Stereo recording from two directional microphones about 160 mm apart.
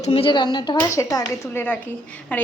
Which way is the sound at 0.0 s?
40° left (ahead or behind).